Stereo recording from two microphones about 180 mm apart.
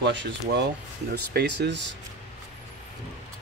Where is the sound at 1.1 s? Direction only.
65° right (ahead or behind).